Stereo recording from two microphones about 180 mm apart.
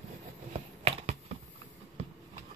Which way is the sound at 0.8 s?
35° right (ahead or behind).